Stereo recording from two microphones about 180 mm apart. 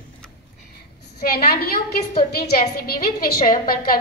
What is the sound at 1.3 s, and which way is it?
A woman's voice, 60° left (ahead or behind).